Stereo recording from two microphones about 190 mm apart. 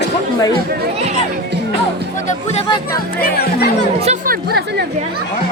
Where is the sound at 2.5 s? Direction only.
35° left (ahead or behind).